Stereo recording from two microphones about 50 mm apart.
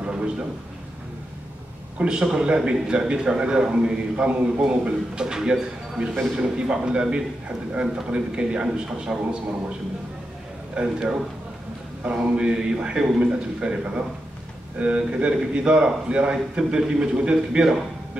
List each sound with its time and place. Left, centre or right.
0.0 s a sound: right
2.0 s a man's voice: centre
10.7 s a man's voice: right